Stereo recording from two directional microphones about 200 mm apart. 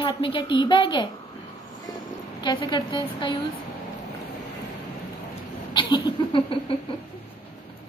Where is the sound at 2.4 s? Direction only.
25° left (ahead or behind).